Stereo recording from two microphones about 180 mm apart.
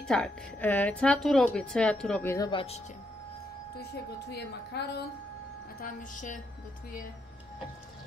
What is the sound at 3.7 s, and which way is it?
A woman's voice, 65° left (ahead or behind).